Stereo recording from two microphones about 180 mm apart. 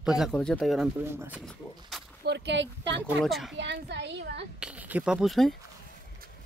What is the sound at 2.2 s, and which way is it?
Speech, 75° right (ahead or behind).